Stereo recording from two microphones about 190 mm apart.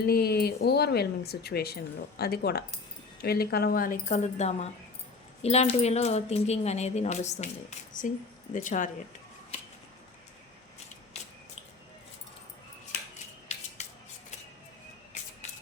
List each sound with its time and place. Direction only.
0.1 s speech: 55° left (ahead or behind)
13.5 s scissors: 35° left (ahead or behind)